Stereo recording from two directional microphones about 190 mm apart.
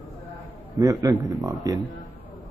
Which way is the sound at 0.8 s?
20° right (ahead or behind).